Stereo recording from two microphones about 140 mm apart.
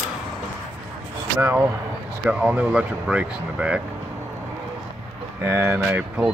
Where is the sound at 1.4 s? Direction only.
15° right (ahead or behind).